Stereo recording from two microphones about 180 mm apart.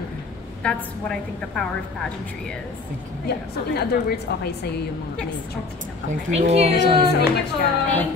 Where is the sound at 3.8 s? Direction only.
60° left (ahead or behind).